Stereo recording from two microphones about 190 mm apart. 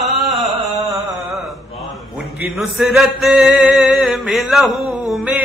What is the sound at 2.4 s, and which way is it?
Chant, centre (ahead or behind).